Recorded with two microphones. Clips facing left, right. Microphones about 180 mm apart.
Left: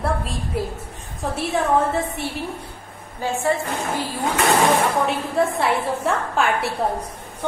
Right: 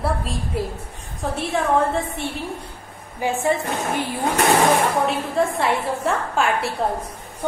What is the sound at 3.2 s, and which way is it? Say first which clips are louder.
Speech: right 1 dB; 15° right (ahead or behind).